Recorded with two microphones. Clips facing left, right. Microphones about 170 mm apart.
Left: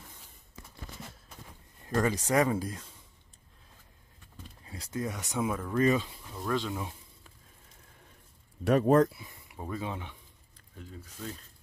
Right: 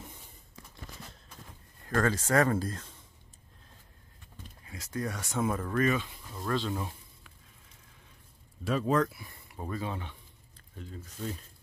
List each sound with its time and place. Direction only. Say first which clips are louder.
1.8 s speech: even; 15° left (ahead or behind)
4.6 s speech: even; 30° left (ahead or behind)
5.4 s speech: right 1 dB; centre (ahead or behind)
5.8 s speech: left 3 dB; 25° left (ahead or behind)
6.2 s speech: even; 5° left (ahead or behind)
8.6 s speech: left 5 dB; 55° left (ahead or behind)
9.1 s a sound: even; 15° left (ahead or behind)
9.6 s speech: even; 15° left (ahead or behind)